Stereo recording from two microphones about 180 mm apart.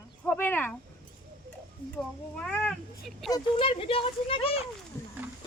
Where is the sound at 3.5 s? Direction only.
30° left (ahead or behind).